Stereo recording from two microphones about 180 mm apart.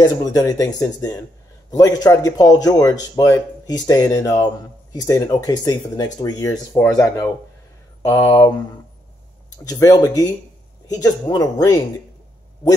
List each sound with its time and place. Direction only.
0.0 s speech: 20° left (ahead or behind)
8.0 s speech: 15° left (ahead or behind)
9.7 s speech: 20° left (ahead or behind)